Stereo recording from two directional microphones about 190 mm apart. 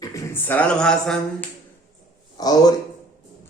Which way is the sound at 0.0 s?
15° left (ahead or behind).